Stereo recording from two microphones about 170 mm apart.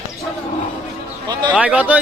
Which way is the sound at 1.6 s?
10° right (ahead or behind).